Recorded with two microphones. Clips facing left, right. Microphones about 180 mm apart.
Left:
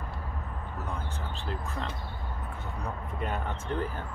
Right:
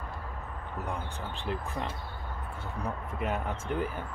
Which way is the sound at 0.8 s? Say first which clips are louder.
Right 1 dB; 15° right (ahead or behind).